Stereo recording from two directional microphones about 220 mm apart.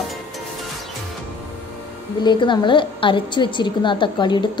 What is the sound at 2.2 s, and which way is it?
A woman's voice, 20° left (ahead or behind).